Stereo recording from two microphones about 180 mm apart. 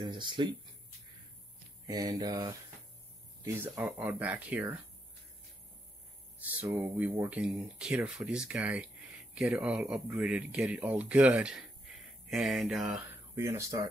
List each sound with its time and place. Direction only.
0.0 s speech: 25° right (ahead or behind)
1.9 s speech: 20° right (ahead or behind)
3.4 s speech: 10° right (ahead or behind)
6.4 s speech: 10° right (ahead or behind)
13.4 s speech: 15° right (ahead or behind)